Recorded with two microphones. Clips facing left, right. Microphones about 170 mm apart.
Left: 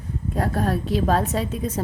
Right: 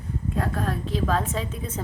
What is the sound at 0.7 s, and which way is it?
Speech, 70° left (ahead or behind).